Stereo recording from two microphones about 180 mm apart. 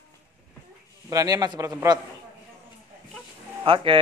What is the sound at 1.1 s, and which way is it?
Speech, 20° right (ahead or behind).